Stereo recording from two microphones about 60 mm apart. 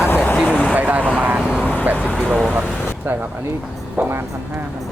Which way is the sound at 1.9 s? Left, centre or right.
Centre.